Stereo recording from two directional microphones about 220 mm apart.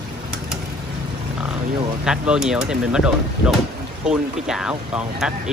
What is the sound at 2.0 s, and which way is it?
Speech, 5° right (ahead or behind).